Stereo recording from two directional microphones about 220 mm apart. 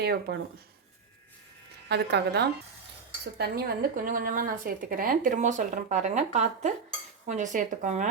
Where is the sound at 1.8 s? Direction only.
50° right (ahead or behind).